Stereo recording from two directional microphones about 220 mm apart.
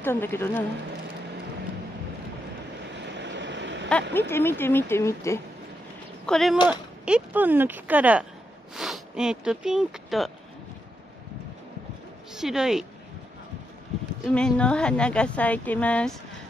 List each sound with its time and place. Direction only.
0.0 s speech: 10° left (ahead or behind)
3.1 s vehicle: 50° right (ahead or behind)
4.1 s speech: 10° left (ahead or behind)
6.2 s speech: centre (ahead or behind)
12.4 s speech: centre (ahead or behind)
14.2 s speech: 5° left (ahead or behind)